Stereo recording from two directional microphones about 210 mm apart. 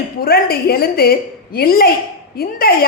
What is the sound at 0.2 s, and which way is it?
A woman's voice, 45° left (ahead or behind).